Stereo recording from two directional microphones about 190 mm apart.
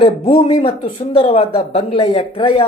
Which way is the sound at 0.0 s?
25° left (ahead or behind).